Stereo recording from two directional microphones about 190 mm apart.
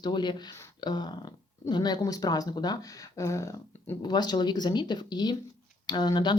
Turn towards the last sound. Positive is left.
turn(degrees=25)  # may be behind; listen again after turning